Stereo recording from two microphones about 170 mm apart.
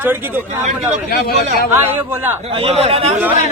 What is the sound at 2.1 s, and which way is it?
Speech, 15° right (ahead or behind).